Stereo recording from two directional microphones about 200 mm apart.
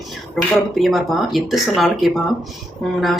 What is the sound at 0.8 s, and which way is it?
Speech, centre (ahead or behind).